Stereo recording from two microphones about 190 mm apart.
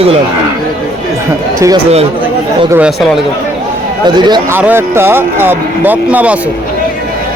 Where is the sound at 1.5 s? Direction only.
15° right (ahead or behind).